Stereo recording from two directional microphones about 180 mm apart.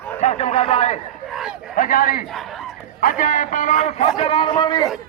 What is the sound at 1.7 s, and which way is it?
A man's voice, 50° left (ahead or behind).